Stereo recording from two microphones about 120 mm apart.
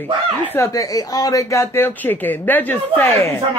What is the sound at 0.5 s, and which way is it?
Speech, 25° left (ahead or behind).